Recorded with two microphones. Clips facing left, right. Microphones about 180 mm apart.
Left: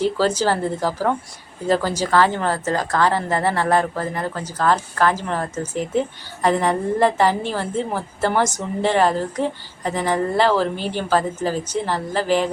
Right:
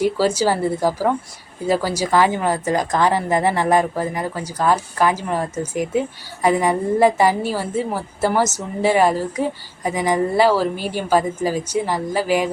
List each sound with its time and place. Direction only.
0.0 s speech: 10° right (ahead or behind)